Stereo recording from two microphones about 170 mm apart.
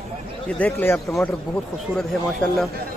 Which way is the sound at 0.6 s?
15° left (ahead or behind).